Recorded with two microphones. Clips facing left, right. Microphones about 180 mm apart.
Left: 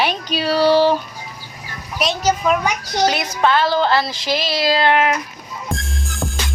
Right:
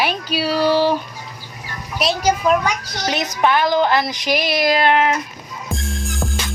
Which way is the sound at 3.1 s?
15° right (ahead or behind).